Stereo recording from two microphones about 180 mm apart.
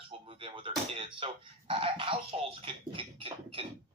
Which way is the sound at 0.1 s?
30° right (ahead or behind).